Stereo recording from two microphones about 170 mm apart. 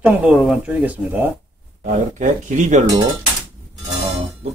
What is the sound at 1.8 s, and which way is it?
Speech, 45° right (ahead or behind).